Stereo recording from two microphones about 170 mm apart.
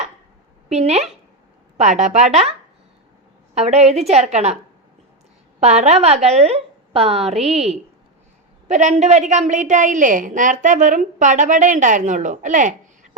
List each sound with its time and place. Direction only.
0.7 s a woman's voice: 40° right (ahead or behind)
3.5 s a woman's voice: 40° right (ahead or behind)
5.5 s a woman's voice: 40° right (ahead or behind)